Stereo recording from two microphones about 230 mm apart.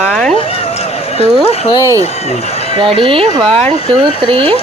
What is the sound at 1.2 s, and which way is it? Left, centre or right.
Speech, left.